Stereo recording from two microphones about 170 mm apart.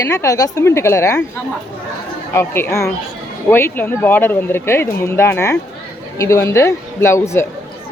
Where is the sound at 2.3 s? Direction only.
15° left (ahead or behind).